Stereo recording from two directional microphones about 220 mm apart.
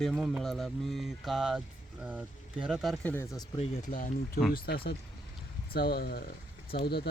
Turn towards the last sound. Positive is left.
turn(degrees=45)  # may be behind; listen again after turning